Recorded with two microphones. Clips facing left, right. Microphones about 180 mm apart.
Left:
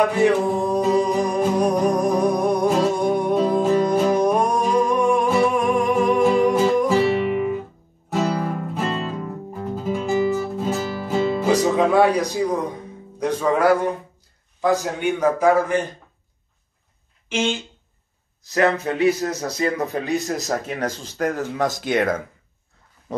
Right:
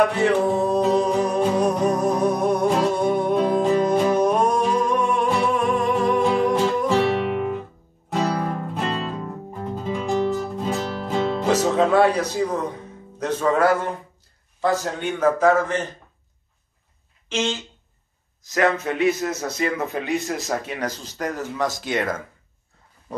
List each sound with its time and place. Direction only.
0.0 s music: 10° left (ahead or behind)
9.0 s guitar: 5° left (ahead or behind)
13.2 s a man's voice: 10° left (ahead or behind)
17.3 s a man's voice: 10° left (ahead or behind)
18.4 s a man's voice: 30° left (ahead or behind); by 22.2 s 55° left (ahead or behind)